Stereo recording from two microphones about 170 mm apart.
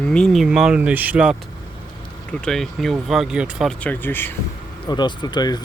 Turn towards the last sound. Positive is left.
turn(degrees=25)  # may be behind; listen again after turning